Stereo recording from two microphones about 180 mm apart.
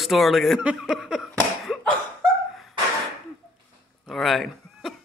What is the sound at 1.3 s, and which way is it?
Cough, centre (ahead or behind).